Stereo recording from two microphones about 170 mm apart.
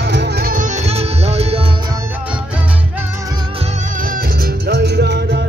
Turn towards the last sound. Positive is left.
turn(degrees=-80)